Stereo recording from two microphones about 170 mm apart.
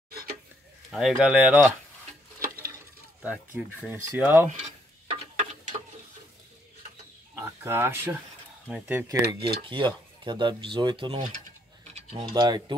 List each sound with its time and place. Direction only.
0.9 s speech: 5° right (ahead or behind)
3.2 s speech: 5° right (ahead or behind)
5.3 s clock: 40° right (ahead or behind)
7.6 s speech: 15° right (ahead or behind)
9.6 s speech: 30° right (ahead or behind)